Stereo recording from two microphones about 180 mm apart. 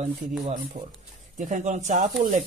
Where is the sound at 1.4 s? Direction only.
45° right (ahead or behind).